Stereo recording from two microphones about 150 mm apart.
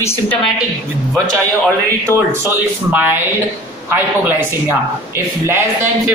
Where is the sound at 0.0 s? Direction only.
15° left (ahead or behind).